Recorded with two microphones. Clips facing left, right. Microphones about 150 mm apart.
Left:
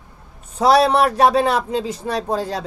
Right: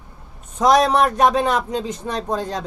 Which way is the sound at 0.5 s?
30° left (ahead or behind).